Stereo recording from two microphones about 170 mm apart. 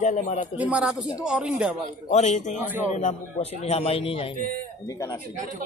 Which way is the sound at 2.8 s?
45° left (ahead or behind).